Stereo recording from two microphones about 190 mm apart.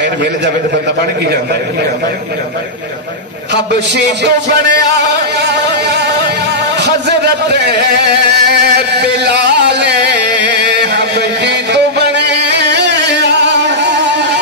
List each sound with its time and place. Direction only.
4.9 s speech: 60° right (ahead or behind)
10.3 s music: 65° right (ahead or behind)